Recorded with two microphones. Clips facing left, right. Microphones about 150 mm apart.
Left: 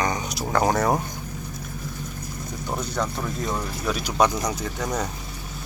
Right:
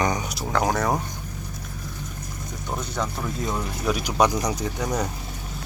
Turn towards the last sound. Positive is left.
turn(degrees=-10)  # may be behind; listen again after turning